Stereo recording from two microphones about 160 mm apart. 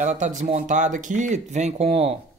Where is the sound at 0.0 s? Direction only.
50° right (ahead or behind).